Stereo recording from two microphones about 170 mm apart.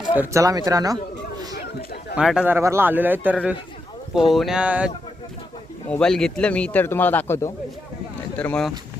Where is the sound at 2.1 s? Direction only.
5° right (ahead or behind).